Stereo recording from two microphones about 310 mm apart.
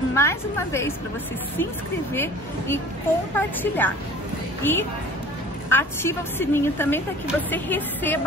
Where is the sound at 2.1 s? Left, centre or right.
Centre.